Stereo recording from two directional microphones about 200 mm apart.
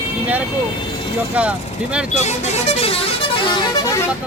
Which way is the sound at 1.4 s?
5° right (ahead or behind).